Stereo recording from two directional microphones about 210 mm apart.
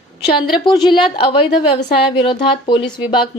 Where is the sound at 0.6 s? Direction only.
20° left (ahead or behind).